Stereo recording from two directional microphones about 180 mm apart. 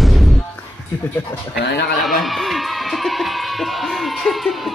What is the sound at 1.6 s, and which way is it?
Speech, 70° left (ahead or behind).